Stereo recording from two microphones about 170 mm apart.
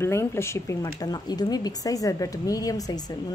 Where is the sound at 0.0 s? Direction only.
15° left (ahead or behind).